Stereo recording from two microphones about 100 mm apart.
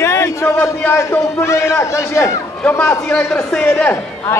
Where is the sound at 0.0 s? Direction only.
25° left (ahead or behind).